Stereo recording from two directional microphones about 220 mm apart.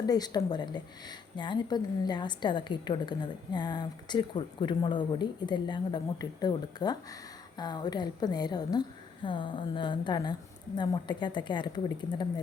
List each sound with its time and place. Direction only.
0.0 s a woman's voice: 15° left (ahead or behind)